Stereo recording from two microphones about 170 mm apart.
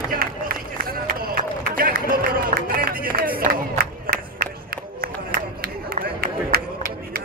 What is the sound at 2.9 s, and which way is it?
Crowd, 55° right (ahead or behind).